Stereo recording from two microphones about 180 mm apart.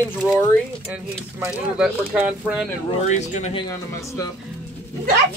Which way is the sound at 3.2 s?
40° left (ahead or behind).